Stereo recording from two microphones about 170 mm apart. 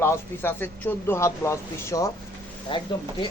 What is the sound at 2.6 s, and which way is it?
Speech, 30° left (ahead or behind).